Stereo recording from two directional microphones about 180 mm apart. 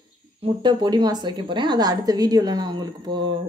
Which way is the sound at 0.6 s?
25° right (ahead or behind).